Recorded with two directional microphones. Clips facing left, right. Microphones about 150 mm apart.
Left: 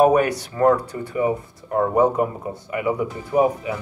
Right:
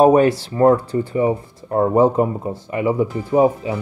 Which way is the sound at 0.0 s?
30° right (ahead or behind).